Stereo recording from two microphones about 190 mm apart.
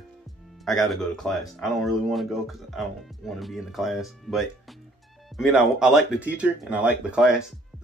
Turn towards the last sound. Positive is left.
turn(degrees=-5)  # may be behind; listen again after turning